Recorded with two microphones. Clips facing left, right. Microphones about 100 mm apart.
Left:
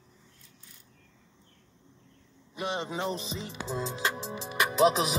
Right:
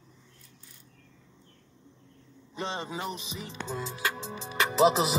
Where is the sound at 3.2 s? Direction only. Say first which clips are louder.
Left 3 dB; 35° left (ahead or behind).